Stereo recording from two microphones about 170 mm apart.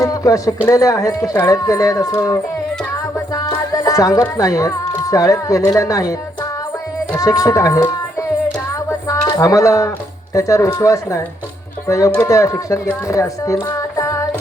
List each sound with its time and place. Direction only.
0.0 s speech: 20° left (ahead or behind)
7.2 s speech: 20° left (ahead or behind)
8.9 s a sound: 20° left (ahead or behind)
10.3 s speech: 20° left (ahead or behind)